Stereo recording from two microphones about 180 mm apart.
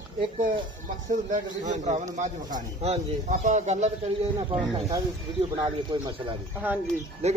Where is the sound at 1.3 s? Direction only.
45° right (ahead or behind).